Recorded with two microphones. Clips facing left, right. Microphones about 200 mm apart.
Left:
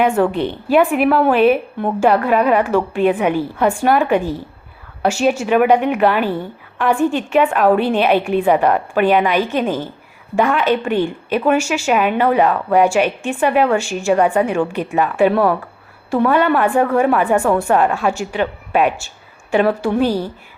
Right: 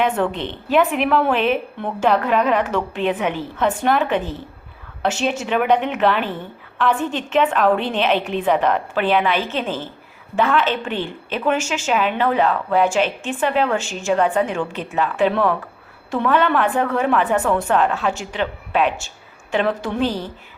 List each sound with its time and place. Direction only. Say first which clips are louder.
0.0 s a woman's voice: left 5 dB; 10° left (ahead or behind)